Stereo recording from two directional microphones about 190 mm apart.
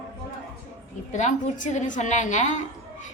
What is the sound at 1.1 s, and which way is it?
A woman's voice, 40° left (ahead or behind).